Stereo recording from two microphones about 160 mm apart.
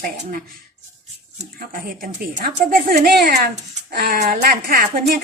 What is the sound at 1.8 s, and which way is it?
A woman's voice, 65° right (ahead or behind).